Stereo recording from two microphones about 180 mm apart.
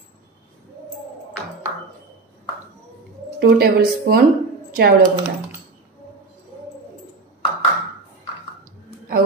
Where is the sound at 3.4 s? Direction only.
55° right (ahead or behind).